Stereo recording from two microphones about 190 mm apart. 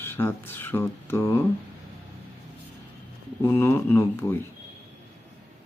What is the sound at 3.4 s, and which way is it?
Speech, 15° left (ahead or behind).